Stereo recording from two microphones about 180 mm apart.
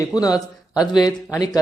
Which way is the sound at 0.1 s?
20° left (ahead or behind).